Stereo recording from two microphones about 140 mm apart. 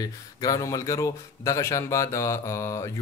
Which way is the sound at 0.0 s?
25° left (ahead or behind).